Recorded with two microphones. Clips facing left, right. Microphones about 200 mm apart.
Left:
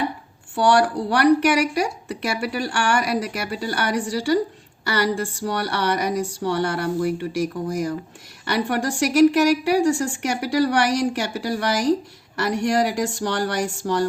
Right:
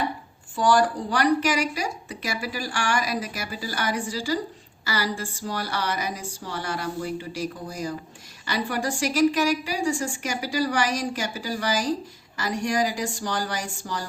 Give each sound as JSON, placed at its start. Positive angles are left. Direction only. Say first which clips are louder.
{"t": 0.5, "sound": "speech", "louder": "left 3 dB", "side_deg": 70}